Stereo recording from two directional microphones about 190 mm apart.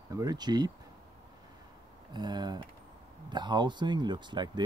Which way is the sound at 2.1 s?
25° right (ahead or behind).